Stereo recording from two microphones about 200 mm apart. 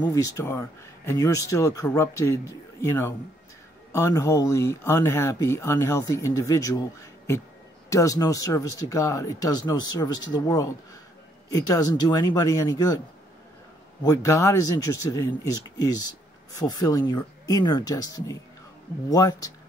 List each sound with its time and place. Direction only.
0.0 s speech: 15° left (ahead or behind)
14.0 s speech: 15° left (ahead or behind)